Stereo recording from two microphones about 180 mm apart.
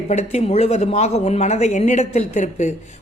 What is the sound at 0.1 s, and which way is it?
Speech, 40° left (ahead or behind).